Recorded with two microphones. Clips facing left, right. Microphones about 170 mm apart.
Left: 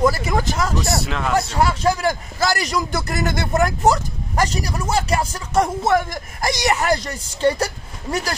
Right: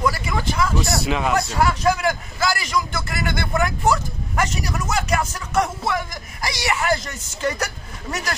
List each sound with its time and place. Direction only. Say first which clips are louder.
0.0 s speech: left 4 dB; 40° left (ahead or behind)
1.0 s speech: right 2 dB; 5° right (ahead or behind)
1.6 s a man's voice: even; 30° left (ahead or behind)
5.9 s a man's voice: left 6 dB; 50° left (ahead or behind); by 8.4 s 30° left (ahead or behind)